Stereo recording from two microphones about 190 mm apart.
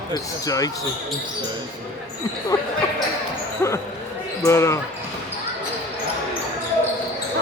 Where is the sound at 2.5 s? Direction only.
15° left (ahead or behind).